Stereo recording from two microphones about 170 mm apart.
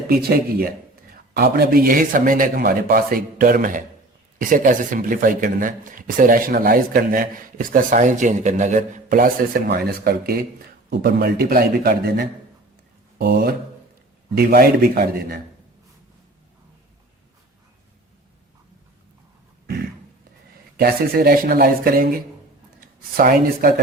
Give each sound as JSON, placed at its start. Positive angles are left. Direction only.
{"t": 0.1, "sound": "speech", "side_deg": -65}
{"t": 20.7, "sound": "speech", "side_deg": -65}